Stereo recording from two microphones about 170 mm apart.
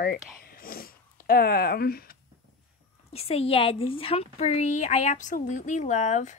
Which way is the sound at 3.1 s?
35° left (ahead or behind).